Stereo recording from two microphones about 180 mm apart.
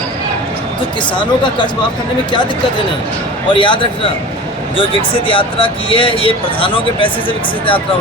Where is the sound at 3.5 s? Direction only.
25° left (ahead or behind).